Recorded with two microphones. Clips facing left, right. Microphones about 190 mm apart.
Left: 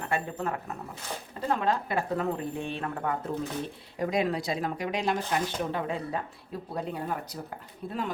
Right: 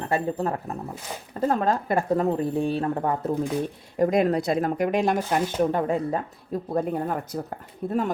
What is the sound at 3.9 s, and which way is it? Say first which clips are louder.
Speech: right 7 dB; 50° right (ahead or behind).